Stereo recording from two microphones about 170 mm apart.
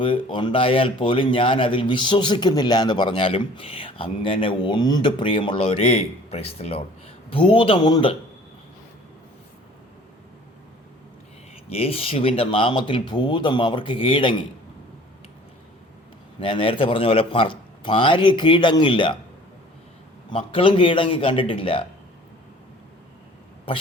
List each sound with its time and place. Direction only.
0.0 s speech: 30° left (ahead or behind)
11.7 s speech: 35° left (ahead or behind)
16.4 s speech: 30° left (ahead or behind)
20.3 s speech: 30° left (ahead or behind)